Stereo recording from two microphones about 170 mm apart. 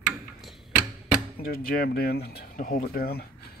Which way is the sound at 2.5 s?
55° left (ahead or behind).